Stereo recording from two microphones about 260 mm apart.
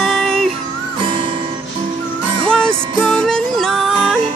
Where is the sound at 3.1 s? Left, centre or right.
Centre.